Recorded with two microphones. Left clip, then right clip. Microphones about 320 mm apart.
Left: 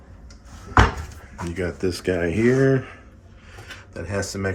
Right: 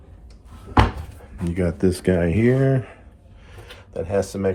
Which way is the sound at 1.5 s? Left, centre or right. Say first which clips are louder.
Right 4 dB; right.